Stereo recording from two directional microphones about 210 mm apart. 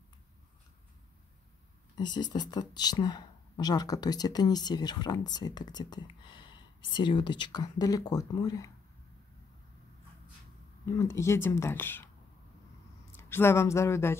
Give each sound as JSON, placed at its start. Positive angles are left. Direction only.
{"t": 2.0, "sound": "speech", "side_deg": 20}
{"t": 10.9, "sound": "speech", "side_deg": 15}
{"t": 13.1, "sound": "speech", "side_deg": 10}